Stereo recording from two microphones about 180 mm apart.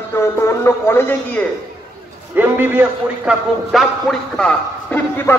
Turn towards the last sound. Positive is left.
turn(degrees=10)  # may be behind; listen again after turning